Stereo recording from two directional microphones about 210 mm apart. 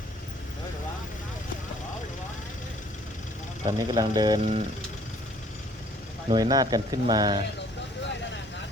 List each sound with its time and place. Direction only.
3.7 s speech: 20° right (ahead or behind)
6.2 s speech: 20° right (ahead or behind)